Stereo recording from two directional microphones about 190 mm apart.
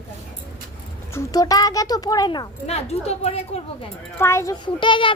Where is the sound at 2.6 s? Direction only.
35° left (ahead or behind).